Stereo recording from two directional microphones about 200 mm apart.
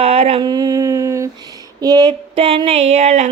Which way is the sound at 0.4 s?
20° right (ahead or behind).